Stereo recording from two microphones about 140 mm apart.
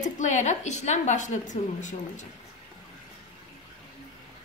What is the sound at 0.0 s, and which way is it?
A woman's voice, 60° left (ahead or behind).